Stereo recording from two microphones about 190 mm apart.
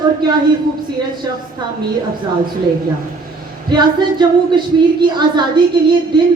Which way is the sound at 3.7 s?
25° right (ahead or behind).